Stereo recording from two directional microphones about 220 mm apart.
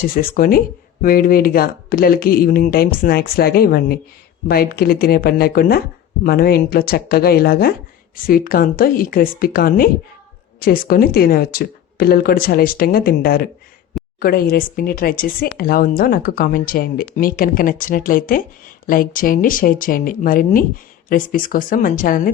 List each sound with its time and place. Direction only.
0.1 s speech: 40° left (ahead or behind)